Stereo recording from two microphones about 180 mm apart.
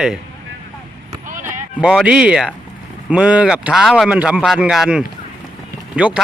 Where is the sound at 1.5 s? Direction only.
5° right (ahead or behind).